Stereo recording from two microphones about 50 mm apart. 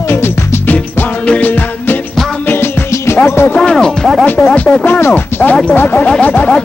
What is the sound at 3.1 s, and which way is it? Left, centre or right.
Music, left.